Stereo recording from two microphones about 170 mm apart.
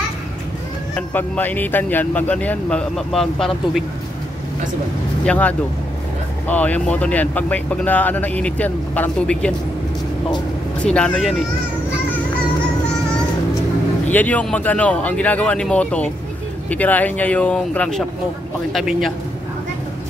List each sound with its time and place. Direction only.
0.9 s speech: 10° left (ahead or behind)
5.2 s speech: 10° left (ahead or behind)
10.8 s a man's voice: 5° left (ahead or behind)
14.1 s a man's voice: 10° left (ahead or behind)